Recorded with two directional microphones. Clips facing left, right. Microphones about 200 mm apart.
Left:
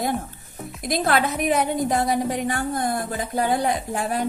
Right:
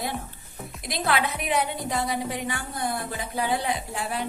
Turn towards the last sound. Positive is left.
turn(degrees=45)  # may be behind; listen again after turning